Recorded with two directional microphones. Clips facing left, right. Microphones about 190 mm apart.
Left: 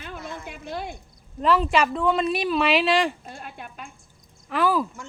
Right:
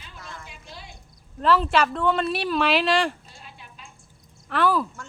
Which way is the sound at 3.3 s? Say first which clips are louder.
Left 9 dB; 55° left (ahead or behind).